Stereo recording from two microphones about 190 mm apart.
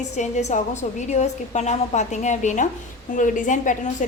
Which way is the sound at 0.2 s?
40° left (ahead or behind).